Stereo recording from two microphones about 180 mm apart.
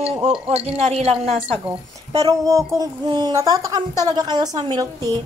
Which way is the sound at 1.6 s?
20° right (ahead or behind).